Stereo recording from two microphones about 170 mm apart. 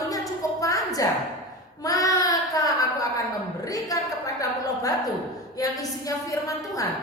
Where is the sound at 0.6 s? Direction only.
20° left (ahead or behind).